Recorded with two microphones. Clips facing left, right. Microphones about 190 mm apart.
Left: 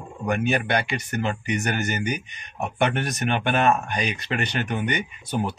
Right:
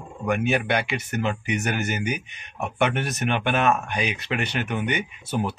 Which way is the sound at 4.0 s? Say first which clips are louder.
Even; 5° right (ahead or behind).